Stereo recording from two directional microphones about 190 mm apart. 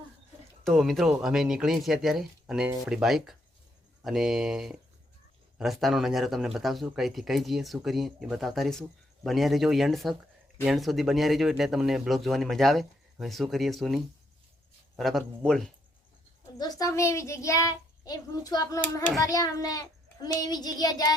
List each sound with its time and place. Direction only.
0.6 s speech: centre (ahead or behind)
16.6 s a child's voice: 20° left (ahead or behind)